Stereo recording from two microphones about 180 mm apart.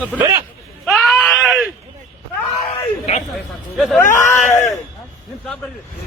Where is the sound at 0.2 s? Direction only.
15° right (ahead or behind).